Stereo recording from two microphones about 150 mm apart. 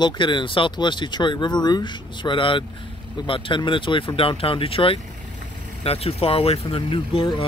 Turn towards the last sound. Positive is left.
turn(degrees=35)  # may be behind; listen again after turning